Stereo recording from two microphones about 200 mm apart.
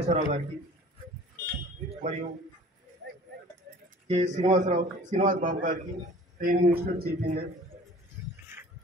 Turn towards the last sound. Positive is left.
turn(degrees=-50)  # may be behind; listen again after turning